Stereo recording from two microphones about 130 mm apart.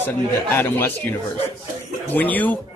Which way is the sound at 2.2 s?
15° left (ahead or behind).